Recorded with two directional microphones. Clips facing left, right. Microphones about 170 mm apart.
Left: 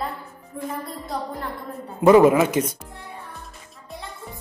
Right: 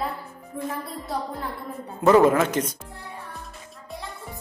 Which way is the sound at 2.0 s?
10° left (ahead or behind).